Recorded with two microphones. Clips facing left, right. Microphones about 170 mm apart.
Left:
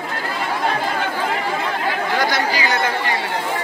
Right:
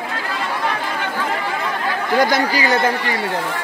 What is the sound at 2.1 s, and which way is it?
Speech, 45° right (ahead or behind).